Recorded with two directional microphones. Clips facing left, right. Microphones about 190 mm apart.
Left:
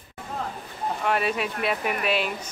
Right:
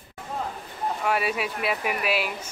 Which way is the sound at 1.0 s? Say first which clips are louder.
Left 1 dB; 5° right (ahead or behind).